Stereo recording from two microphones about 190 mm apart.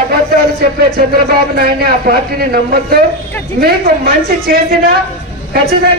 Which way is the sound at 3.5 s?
55° right (ahead or behind).